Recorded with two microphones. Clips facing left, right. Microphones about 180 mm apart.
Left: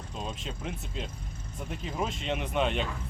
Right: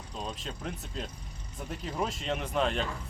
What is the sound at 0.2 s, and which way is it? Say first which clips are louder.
Speech: even; centre (ahead or behind).